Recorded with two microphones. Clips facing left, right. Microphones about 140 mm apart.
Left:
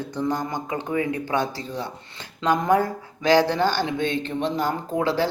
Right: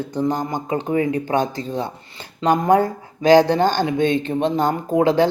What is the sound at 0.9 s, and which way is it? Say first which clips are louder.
Speech: right 5 dB; 35° right (ahead or behind).